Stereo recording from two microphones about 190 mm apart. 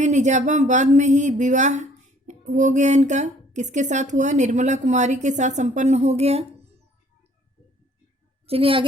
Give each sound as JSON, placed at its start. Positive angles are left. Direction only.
{"t": 0.0, "sound": "speech", "side_deg": -40}
{"t": 8.4, "sound": "a woman's voice", "side_deg": -30}